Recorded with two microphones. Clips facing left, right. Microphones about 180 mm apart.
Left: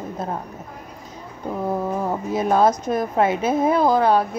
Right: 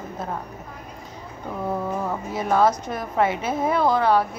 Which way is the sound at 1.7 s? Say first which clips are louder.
Left 2 dB; 15° left (ahead or behind).